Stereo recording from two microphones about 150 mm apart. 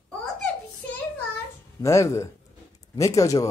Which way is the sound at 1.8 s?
20° left (ahead or behind).